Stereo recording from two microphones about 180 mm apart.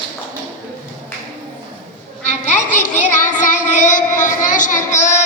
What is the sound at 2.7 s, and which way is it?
Child singing, 45° left (ahead or behind).